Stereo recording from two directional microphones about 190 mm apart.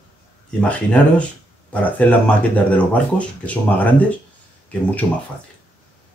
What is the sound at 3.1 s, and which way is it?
Speech, 5° left (ahead or behind).